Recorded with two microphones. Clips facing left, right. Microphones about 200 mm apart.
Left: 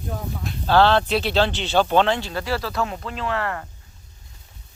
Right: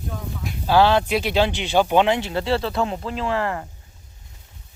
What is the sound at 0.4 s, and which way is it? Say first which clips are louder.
Speech: even; 10° right (ahead or behind).